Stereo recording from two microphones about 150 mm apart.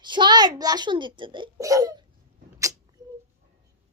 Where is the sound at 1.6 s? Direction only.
25° right (ahead or behind).